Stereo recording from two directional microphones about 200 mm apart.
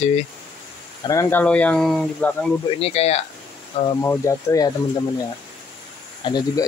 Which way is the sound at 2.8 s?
30° left (ahead or behind).